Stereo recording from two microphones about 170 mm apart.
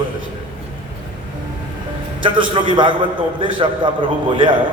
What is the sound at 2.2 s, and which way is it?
A man's voice, 30° right (ahead or behind).